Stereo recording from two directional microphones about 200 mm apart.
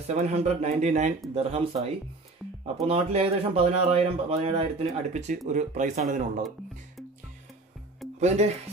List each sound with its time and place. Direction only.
0.0 s speech: 35° right (ahead or behind)
8.2 s speech: 35° right (ahead or behind)